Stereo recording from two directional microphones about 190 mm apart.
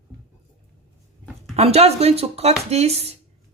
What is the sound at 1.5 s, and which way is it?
A woman's voice, 35° right (ahead or behind).